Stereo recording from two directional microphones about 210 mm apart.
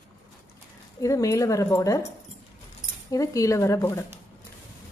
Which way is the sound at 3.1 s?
15° left (ahead or behind).